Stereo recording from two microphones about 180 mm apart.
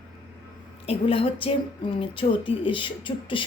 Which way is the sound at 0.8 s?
30° left (ahead or behind).